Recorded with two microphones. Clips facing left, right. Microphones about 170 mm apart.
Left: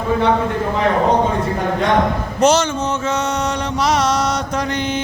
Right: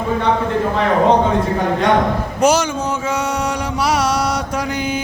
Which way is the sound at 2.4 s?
10° right (ahead or behind).